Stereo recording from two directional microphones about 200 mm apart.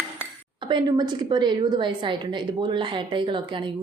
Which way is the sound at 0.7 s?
20° right (ahead or behind).